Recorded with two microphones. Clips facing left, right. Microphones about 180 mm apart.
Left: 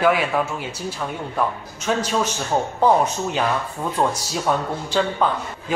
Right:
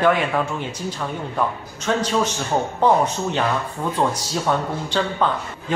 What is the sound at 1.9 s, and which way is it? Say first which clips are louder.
Speech: even; 10° left (ahead or behind).